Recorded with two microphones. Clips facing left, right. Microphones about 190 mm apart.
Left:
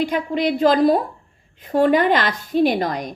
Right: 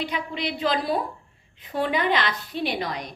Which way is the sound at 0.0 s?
45° left (ahead or behind).